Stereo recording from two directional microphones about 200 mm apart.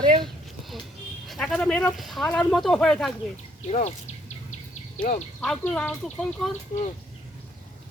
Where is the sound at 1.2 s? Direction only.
Centre (ahead or behind).